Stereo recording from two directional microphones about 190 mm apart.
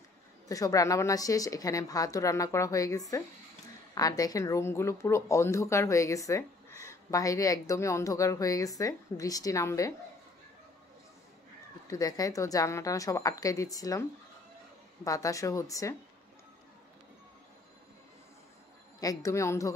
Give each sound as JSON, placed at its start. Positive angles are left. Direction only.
{"t": 0.5, "sound": "speech", "side_deg": 15}
{"t": 11.9, "sound": "speech", "side_deg": 20}
{"t": 15.0, "sound": "speech", "side_deg": 15}
{"t": 18.9, "sound": "speech", "side_deg": 20}